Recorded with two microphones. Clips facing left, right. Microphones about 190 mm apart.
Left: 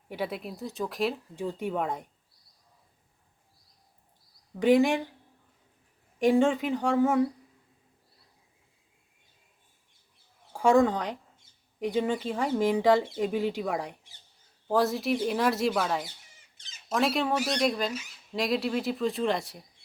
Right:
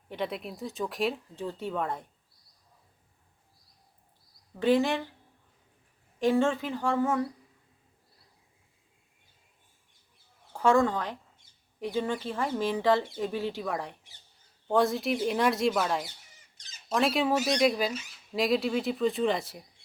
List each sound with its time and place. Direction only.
0.1 s speech: 5° left (ahead or behind)
1.4 s speech: 15° left (ahead or behind)
4.6 s speech: 15° left (ahead or behind)
6.1 s speech: 15° left (ahead or behind)
10.5 s speech: 15° left (ahead or behind)
14.7 s speech: centre (ahead or behind)